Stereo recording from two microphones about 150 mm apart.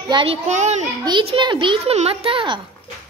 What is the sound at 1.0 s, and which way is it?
A child's voice, 35° right (ahead or behind).